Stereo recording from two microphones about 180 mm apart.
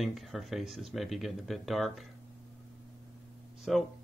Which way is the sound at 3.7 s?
Centre (ahead or behind).